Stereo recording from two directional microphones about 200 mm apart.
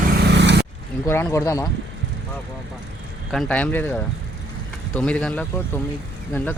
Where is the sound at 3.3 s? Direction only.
5° left (ahead or behind).